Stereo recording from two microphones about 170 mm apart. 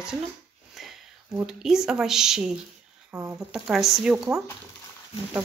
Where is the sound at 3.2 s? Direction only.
20° right (ahead or behind).